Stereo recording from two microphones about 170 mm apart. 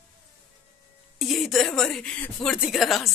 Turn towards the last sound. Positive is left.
turn(degrees=0)  # may be behind; listen again after turning